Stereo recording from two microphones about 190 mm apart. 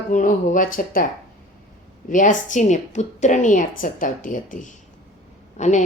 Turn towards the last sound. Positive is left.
turn(degrees=40)  # may be behind; listen again after turning